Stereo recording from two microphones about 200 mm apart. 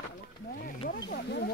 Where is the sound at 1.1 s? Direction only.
50° left (ahead or behind).